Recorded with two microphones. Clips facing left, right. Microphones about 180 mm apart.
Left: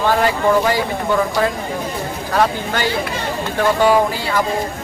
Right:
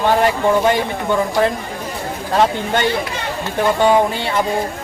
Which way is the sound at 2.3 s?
25° right (ahead or behind).